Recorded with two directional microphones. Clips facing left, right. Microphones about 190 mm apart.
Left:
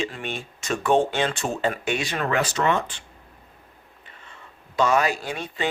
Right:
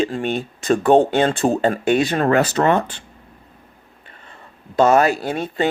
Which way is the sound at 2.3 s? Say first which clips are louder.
Right 4 dB; 55° right (ahead or behind).